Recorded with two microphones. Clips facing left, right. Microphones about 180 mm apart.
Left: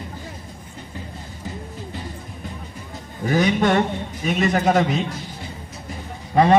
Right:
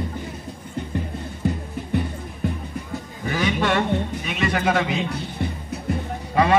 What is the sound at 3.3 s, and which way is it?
A man's voice, 40° left (ahead or behind).